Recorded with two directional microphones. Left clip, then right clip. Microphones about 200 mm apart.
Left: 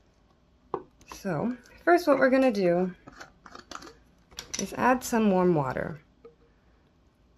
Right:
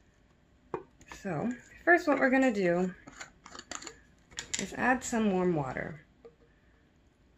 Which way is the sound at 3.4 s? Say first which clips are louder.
Left 2 dB; 20° left (ahead or behind).